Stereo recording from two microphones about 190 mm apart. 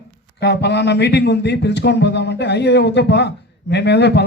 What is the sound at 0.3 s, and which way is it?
Speech, 60° left (ahead or behind).